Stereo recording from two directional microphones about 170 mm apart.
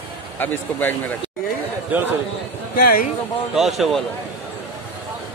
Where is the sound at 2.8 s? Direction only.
60° left (ahead or behind).